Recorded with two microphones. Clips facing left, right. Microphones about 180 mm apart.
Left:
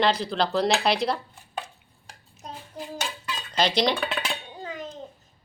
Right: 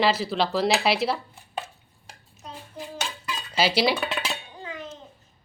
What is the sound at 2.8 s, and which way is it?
Chicken, 35° left (ahead or behind).